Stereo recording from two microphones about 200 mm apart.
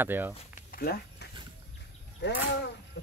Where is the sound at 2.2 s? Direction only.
60° left (ahead or behind).